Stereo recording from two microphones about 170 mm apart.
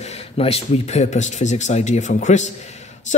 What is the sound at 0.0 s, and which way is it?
Speech, 40° left (ahead or behind).